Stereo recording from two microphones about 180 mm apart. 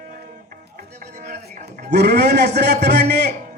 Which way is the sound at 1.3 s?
65° right (ahead or behind).